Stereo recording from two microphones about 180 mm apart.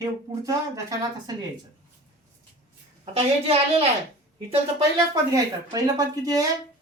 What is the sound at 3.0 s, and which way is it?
Speech, 35° right (ahead or behind).